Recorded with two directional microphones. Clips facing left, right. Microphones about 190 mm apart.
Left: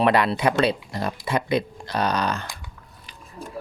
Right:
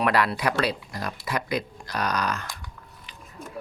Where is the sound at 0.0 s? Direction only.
25° left (ahead or behind).